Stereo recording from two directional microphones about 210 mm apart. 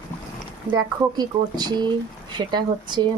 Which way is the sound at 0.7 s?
20° right (ahead or behind).